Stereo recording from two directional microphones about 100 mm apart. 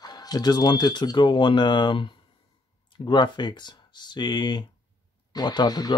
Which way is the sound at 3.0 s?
50° left (ahead or behind).